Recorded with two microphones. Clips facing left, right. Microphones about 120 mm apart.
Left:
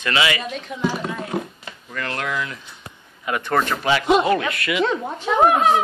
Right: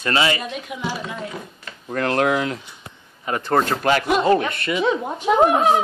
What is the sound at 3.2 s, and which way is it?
Speech, 35° right (ahead or behind).